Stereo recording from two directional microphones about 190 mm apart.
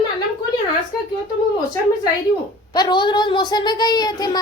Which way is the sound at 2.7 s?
25° left (ahead or behind).